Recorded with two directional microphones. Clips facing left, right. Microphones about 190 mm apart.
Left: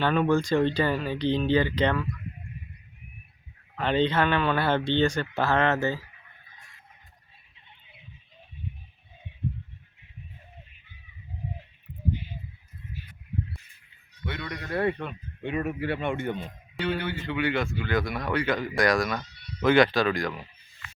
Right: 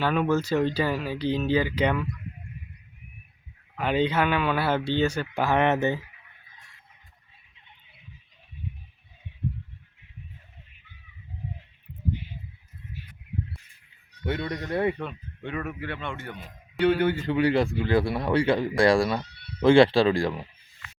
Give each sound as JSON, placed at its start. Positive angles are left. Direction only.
{"t": 0.0, "sound": "speech", "side_deg": -5}
{"t": 3.8, "sound": "speech", "side_deg": -10}
{"t": 14.3, "sound": "speech", "side_deg": -30}
{"t": 15.4, "sound": "speech", "side_deg": 15}
{"t": 17.0, "sound": "speech", "side_deg": -45}